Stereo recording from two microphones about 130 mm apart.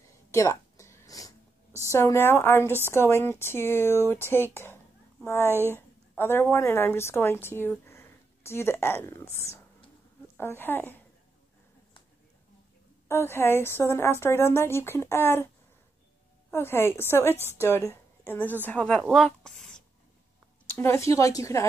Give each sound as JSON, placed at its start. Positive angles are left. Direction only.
{"t": 0.3, "sound": "a sound", "side_deg": 25}
{"t": 1.9, "sound": "a woman's voice", "side_deg": 20}
{"t": 5.5, "sound": "speech", "side_deg": -20}
{"t": 5.8, "sound": "a woman's voice", "side_deg": 15}
{"t": 13.1, "sound": "speech", "side_deg": 20}
{"t": 16.4, "sound": "a woman's voice", "side_deg": 15}
{"t": 20.7, "sound": "speech", "side_deg": 20}